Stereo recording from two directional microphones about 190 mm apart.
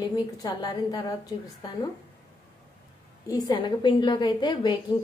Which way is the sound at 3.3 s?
25° left (ahead or behind).